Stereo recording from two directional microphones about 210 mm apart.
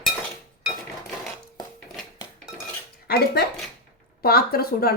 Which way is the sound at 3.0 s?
50° left (ahead or behind).